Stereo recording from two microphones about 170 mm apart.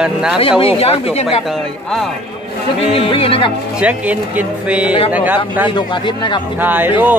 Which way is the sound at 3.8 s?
10° right (ahead or behind).